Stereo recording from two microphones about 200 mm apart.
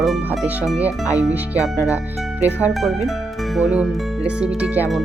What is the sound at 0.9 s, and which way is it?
Speech, 15° left (ahead or behind).